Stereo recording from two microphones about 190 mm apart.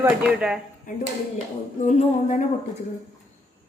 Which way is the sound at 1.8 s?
40° left (ahead or behind).